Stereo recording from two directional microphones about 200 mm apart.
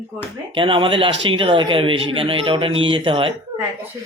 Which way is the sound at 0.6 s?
25° right (ahead or behind).